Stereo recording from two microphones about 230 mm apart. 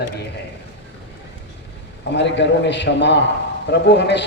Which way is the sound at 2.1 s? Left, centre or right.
Left.